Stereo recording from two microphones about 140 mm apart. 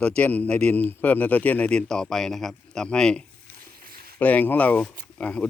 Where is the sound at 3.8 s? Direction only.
90° right.